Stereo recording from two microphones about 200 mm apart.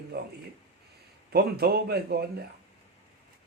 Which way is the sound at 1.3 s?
50° right (ahead or behind).